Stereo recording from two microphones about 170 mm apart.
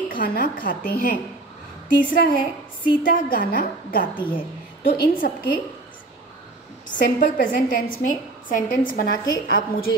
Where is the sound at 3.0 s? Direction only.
55° left (ahead or behind).